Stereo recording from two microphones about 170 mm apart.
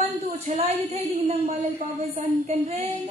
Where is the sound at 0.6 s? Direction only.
40° right (ahead or behind).